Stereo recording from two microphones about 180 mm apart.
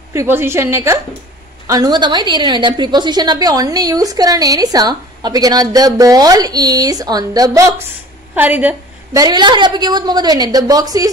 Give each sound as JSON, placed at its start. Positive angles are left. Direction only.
{"t": 0.1, "sound": "a woman's voice", "side_deg": -15}
{"t": 8.4, "sound": "a woman's voice", "side_deg": -10}
{"t": 9.1, "sound": "a woman's voice", "side_deg": -20}